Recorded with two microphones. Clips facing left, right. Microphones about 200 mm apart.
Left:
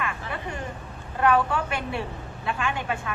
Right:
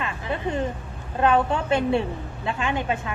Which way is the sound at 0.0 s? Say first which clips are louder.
Right 4 dB; 25° right (ahead or behind).